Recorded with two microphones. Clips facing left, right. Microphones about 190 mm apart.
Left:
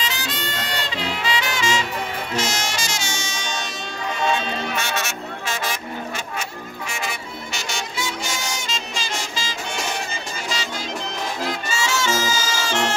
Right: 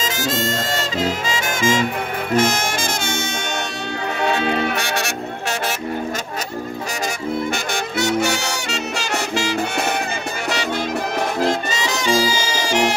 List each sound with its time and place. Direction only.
0.0 s brass instrument: 45° right (ahead or behind)
4.2 s music: 60° right (ahead or behind)
7.5 s music: 60° right (ahead or behind)
11.8 s brass instrument: 15° right (ahead or behind)